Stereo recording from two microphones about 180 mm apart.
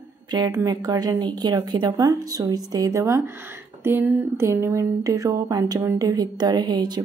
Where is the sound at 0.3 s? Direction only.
25° right (ahead or behind).